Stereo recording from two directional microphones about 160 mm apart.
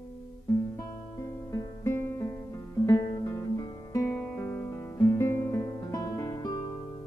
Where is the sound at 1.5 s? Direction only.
20° left (ahead or behind).